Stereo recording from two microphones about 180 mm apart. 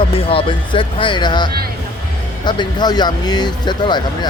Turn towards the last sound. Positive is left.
turn(degrees=25)  # may be behind; listen again after turning